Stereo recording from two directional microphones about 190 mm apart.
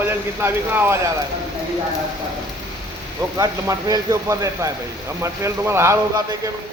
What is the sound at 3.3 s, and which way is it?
Speech, 20° right (ahead or behind).